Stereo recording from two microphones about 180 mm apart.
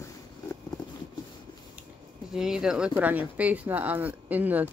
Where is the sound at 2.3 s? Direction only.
5° right (ahead or behind).